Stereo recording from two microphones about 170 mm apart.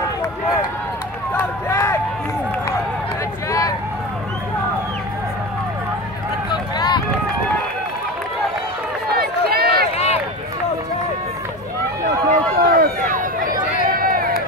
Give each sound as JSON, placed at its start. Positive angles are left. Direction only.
{"t": 1.3, "sound": "a sound", "side_deg": 15}
{"t": 6.5, "sound": "run", "side_deg": 25}
{"t": 9.1, "sound": "run", "side_deg": -65}
{"t": 9.9, "sound": "run", "side_deg": 40}
{"t": 12.0, "sound": "run", "side_deg": -55}